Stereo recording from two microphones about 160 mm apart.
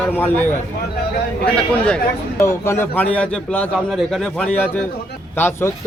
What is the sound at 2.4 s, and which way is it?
A man's voice, 15° left (ahead or behind).